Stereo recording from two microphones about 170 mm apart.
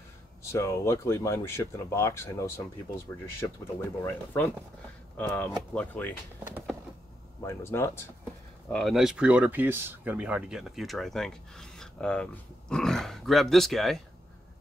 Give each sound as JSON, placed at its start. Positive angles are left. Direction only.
{"t": 0.4, "sound": "speech", "side_deg": 15}
{"t": 4.0, "sound": "speech", "side_deg": 10}
{"t": 6.4, "sound": "a sound", "side_deg": -10}
{"t": 7.4, "sound": "speech", "side_deg": 15}
{"t": 8.6, "sound": "speech", "side_deg": 0}